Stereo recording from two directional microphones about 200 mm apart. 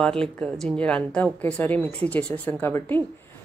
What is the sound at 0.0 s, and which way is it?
A woman's voice, 5° left (ahead or behind).